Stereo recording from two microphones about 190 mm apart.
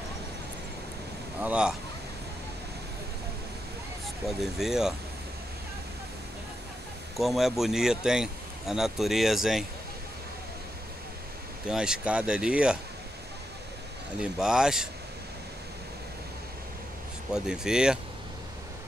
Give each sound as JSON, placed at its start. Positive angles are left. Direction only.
{"t": 1.4, "sound": "speech", "side_deg": -5}
{"t": 4.3, "sound": "speech", "side_deg": 0}
{"t": 7.2, "sound": "speech", "side_deg": 0}
{"t": 11.7, "sound": "speech", "side_deg": -5}
{"t": 14.2, "sound": "speech", "side_deg": -5}
{"t": 17.3, "sound": "speech", "side_deg": -5}